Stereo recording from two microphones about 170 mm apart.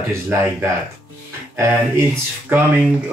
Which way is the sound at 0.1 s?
15° right (ahead or behind).